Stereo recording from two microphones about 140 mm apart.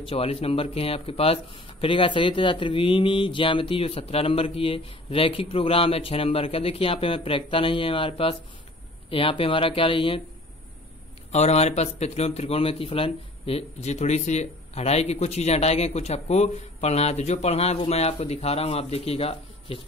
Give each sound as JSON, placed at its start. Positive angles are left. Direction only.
{"t": 0.0, "sound": "speech", "side_deg": 45}
{"t": 11.3, "sound": "speech", "side_deg": 50}